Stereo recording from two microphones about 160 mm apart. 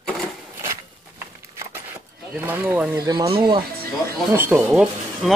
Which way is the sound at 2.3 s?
10° right (ahead or behind).